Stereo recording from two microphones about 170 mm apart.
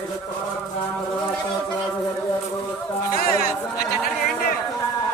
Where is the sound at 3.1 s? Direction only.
65° left (ahead or behind).